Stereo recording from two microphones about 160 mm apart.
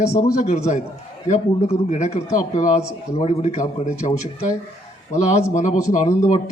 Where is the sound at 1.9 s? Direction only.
45° left (ahead or behind).